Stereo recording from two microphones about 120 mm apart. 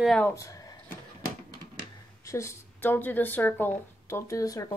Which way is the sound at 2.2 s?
25° left (ahead or behind).